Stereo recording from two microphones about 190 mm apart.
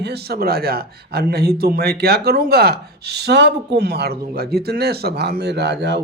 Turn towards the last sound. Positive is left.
turn(degrees=-60)  # may be behind; listen again after turning